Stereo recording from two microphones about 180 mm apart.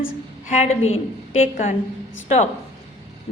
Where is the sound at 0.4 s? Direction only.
40° left (ahead or behind).